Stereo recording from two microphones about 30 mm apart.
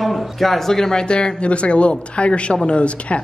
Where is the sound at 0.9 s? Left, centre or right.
Left.